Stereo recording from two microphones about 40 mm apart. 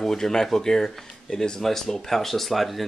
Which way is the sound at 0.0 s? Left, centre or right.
Centre.